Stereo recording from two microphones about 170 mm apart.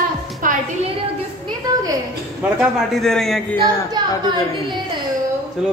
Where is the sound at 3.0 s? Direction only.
Centre (ahead or behind).